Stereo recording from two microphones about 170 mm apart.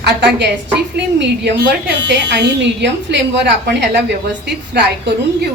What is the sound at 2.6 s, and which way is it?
A woman's voice, 90° right.